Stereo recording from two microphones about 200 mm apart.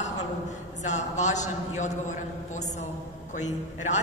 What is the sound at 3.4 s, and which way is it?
Speech, 35° left (ahead or behind).